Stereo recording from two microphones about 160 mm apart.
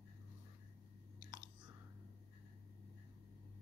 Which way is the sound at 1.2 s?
25° right (ahead or behind).